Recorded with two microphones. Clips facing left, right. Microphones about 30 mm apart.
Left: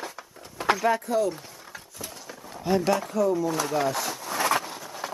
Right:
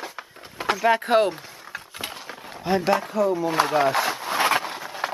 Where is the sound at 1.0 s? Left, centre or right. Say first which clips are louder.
Right 6 dB; right.